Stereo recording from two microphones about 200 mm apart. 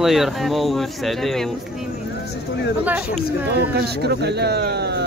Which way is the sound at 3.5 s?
55° right (ahead or behind).